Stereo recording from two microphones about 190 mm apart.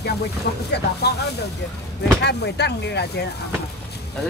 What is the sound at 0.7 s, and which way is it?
Speech, 60° left (ahead or behind).